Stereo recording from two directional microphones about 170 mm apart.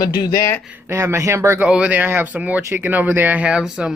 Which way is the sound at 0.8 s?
15° right (ahead or behind).